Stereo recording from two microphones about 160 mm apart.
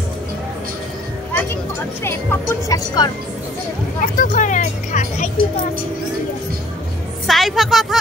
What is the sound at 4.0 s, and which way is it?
Speech, 55° left (ahead or behind).